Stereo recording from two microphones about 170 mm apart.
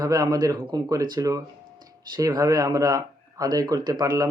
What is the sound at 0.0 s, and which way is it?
Speech, 20° right (ahead or behind).